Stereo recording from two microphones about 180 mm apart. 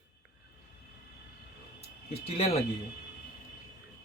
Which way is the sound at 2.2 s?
35° left (ahead or behind).